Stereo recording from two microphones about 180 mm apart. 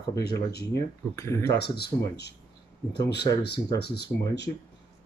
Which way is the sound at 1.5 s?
65° left (ahead or behind).